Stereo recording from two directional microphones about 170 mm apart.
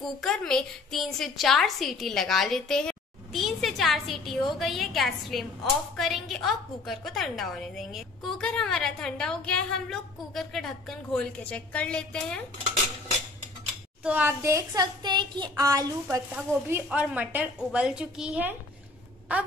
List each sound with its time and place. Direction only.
0.0 s a woman's voice: centre (ahead or behind)
14.0 s a woman's voice: 10° right (ahead or behind)